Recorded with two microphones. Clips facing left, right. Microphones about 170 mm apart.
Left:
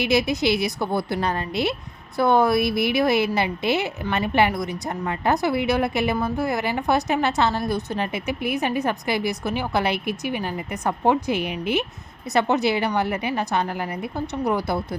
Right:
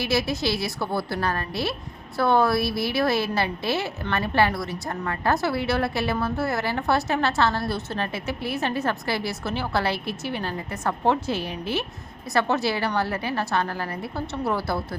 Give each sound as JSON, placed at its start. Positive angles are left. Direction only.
{"t": 0.0, "sound": "a woman's voice", "side_deg": 20}